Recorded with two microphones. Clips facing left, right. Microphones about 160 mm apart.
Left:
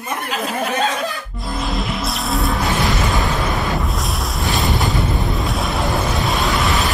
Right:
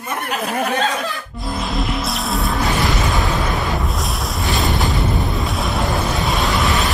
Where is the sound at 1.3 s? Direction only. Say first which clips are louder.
Even; centre (ahead or behind).